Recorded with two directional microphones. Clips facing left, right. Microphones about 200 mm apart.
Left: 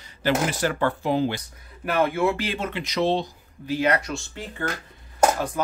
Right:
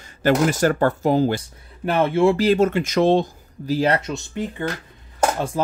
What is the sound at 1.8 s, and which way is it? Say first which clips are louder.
Speech: right 5 dB; 25° right (ahead or behind).